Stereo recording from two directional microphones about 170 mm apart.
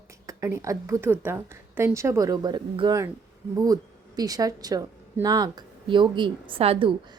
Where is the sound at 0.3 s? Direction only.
15° right (ahead or behind).